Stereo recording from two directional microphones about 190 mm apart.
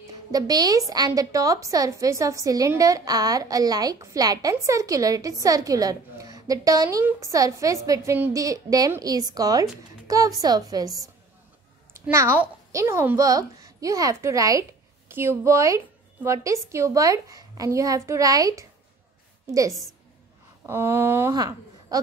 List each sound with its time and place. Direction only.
0.3 s a woman's voice: 20° right (ahead or behind)
19.7 s a woman's voice: centre (ahead or behind)
20.6 s a woman's voice: 10° right (ahead or behind)